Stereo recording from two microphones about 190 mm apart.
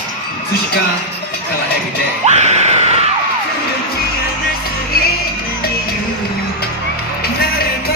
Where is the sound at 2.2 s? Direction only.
35° right (ahead or behind).